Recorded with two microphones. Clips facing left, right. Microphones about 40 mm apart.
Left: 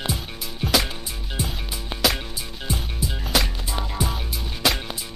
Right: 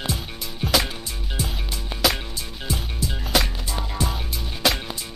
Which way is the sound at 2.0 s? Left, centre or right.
Centre.